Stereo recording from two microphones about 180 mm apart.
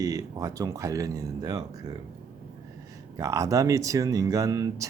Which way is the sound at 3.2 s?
20° right (ahead or behind).